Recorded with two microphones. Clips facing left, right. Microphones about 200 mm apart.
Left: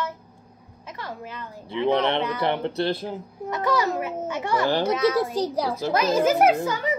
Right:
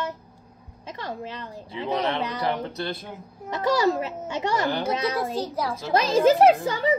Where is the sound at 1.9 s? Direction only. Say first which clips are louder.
Left 2 dB; 30° left (ahead or behind).